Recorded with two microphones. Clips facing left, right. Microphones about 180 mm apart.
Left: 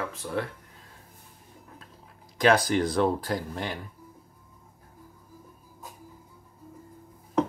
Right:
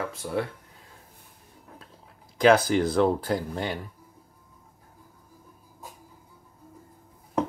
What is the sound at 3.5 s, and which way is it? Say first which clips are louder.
Speech: right 3 dB; 30° right (ahead or behind).